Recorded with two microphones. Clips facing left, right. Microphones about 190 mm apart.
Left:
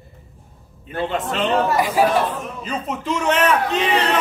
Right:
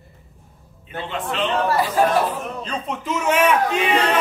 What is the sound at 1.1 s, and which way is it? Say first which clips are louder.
Speech: even; 40° left (ahead or behind).